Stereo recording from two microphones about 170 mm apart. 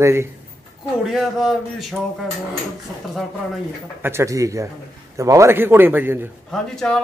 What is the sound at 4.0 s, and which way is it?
A man's voice, 15° right (ahead or behind).